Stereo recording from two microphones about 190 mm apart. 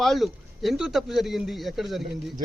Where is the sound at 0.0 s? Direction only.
Centre (ahead or behind).